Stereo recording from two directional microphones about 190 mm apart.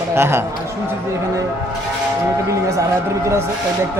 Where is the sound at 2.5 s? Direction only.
15° right (ahead or behind).